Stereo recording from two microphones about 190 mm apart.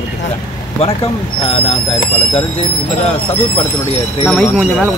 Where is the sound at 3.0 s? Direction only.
30° left (ahead or behind).